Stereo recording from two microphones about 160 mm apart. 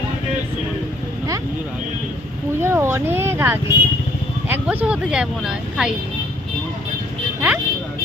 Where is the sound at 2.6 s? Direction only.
15° right (ahead or behind).